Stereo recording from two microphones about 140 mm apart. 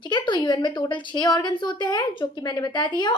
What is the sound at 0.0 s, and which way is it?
A woman's voice, 35° left (ahead or behind).